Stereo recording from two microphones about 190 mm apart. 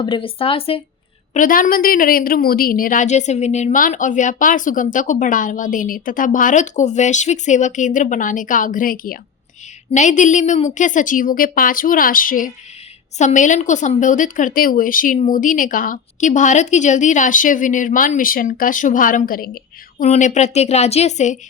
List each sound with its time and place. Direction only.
0.0 s speech: 25° left (ahead or behind)
1.3 s a woman's voice: 45° left (ahead or behind)